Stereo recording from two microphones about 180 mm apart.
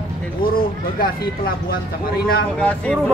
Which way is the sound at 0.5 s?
55° left (ahead or behind).